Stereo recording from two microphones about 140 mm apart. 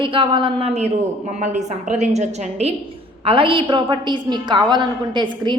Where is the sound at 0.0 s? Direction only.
40° right (ahead or behind).